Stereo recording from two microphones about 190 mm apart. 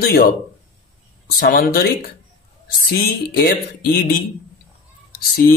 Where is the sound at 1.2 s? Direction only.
50° left (ahead or behind).